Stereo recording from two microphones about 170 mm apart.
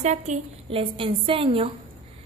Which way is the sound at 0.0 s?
40° right (ahead or behind).